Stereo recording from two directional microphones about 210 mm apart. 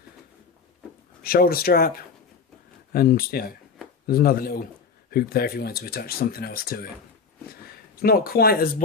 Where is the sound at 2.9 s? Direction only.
45° left (ahead or behind).